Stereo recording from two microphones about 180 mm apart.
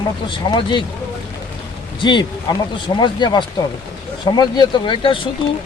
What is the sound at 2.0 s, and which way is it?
Speech, 25° left (ahead or behind).